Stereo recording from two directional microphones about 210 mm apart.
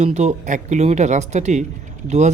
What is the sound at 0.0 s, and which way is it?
Speech, 35° right (ahead or behind).